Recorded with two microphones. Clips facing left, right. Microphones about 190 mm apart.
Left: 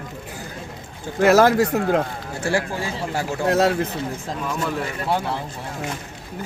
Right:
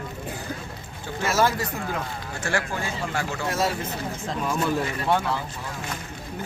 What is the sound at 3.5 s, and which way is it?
Speech, 70° left (ahead or behind).